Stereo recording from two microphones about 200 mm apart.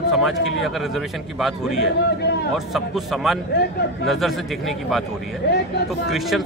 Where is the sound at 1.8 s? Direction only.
55° left (ahead or behind).